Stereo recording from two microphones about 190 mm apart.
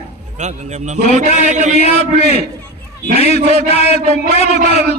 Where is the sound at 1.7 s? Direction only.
35° left (ahead or behind).